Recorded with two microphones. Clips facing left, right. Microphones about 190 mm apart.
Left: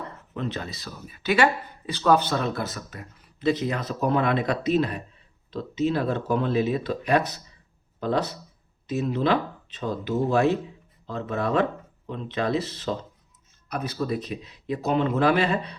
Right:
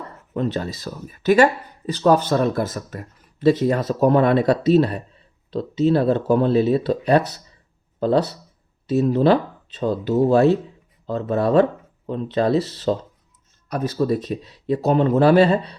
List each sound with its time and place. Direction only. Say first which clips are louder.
0.3 s speech: right 8 dB; 40° right (ahead or behind)